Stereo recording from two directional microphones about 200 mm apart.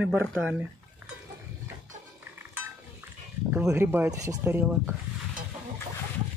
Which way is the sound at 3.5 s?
10° right (ahead or behind).